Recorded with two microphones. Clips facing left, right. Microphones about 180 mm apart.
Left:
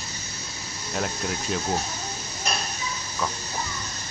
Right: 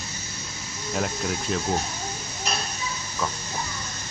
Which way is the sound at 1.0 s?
Centre (ahead or behind).